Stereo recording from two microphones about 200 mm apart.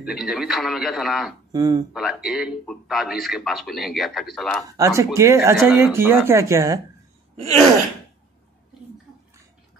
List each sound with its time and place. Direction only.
0.0 s a man's voice: 5° right (ahead or behind)
1.5 s speech: 20° right (ahead or behind)
2.0 s a man's voice: centre (ahead or behind)
4.6 s speech: 15° right (ahead or behind)